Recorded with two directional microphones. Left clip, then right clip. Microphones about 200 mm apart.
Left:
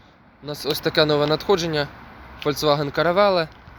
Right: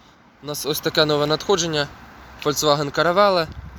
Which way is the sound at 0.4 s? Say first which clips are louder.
Even; 15° right (ahead or behind).